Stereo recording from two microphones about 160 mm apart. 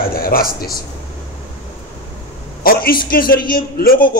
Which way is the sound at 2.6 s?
65° left (ahead or behind).